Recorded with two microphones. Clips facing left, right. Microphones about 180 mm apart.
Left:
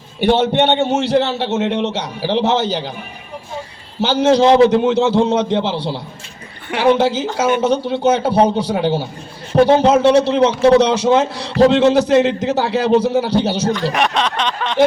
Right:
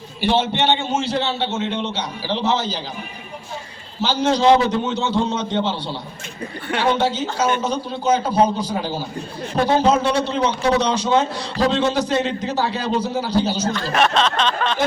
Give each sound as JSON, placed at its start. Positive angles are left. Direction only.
{"t": 0.2, "sound": "a man's voice", "side_deg": 60}
{"t": 4.0, "sound": "a man's voice", "side_deg": 65}
{"t": 13.9, "sound": "a sound", "side_deg": 15}